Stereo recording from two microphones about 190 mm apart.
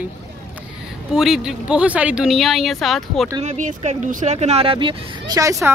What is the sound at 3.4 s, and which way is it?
Speech, 40° right (ahead or behind).